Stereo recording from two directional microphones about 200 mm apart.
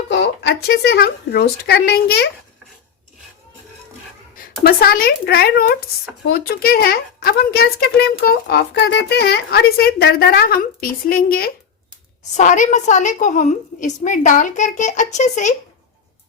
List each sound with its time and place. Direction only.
0.1 s speech: 60° left (ahead or behind)
4.6 s a woman's voice: 50° left (ahead or behind)